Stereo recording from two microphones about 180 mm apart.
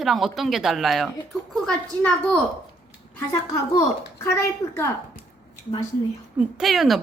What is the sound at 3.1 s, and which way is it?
Speech, 15° left (ahead or behind).